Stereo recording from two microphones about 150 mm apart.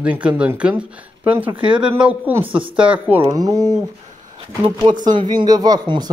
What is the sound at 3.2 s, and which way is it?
Speech, 25° right (ahead or behind).